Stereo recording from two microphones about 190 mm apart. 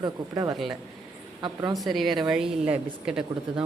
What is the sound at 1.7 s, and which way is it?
A woman's voice, centre (ahead or behind).